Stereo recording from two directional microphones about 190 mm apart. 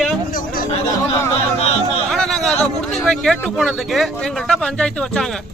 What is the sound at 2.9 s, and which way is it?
Speech, centre (ahead or behind).